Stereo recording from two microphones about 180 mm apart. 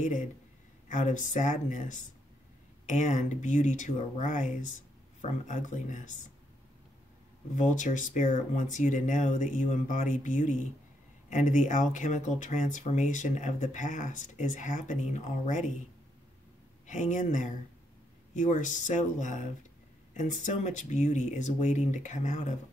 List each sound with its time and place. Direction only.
0.0 s speech: 45° left (ahead or behind)
7.5 s speech: 45° left (ahead or behind)
16.8 s speech: 45° left (ahead or behind)